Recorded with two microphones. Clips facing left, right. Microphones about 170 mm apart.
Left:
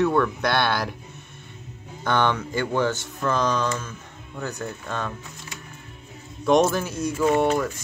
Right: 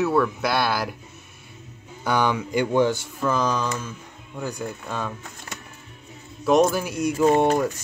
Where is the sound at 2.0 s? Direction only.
10° right (ahead or behind).